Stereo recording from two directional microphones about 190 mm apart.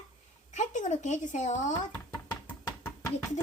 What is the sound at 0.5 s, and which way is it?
Speech, 40° left (ahead or behind).